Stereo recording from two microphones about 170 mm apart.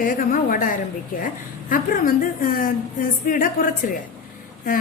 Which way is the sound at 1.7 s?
55° left (ahead or behind).